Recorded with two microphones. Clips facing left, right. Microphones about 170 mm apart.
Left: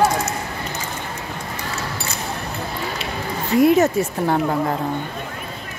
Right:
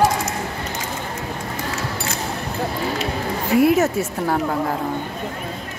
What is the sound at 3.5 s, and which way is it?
A woman's voice, 5° right (ahead or behind).